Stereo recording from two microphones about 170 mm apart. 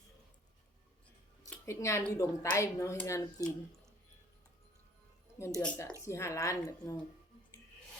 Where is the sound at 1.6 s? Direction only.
15° left (ahead or behind).